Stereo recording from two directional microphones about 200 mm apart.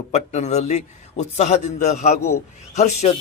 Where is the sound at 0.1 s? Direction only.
35° left (ahead or behind).